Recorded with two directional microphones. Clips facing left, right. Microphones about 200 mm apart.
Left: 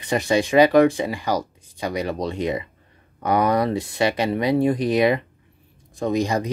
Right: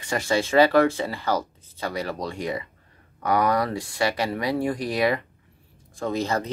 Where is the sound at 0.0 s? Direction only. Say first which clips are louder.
Left 4 dB; 20° left (ahead or behind).